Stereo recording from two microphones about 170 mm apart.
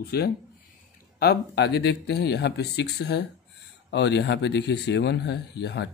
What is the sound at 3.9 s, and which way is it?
A man's voice, 90° left.